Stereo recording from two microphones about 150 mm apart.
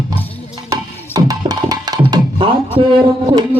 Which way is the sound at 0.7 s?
25° right (ahead or behind).